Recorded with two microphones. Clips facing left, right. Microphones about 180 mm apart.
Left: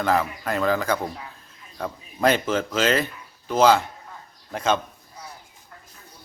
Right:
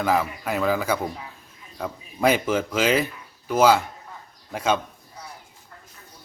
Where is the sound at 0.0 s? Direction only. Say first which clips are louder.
Even; 10° right (ahead or behind).